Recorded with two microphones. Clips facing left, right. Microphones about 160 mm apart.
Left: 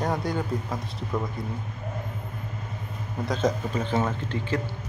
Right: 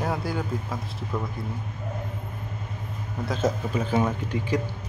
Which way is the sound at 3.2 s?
5° right (ahead or behind).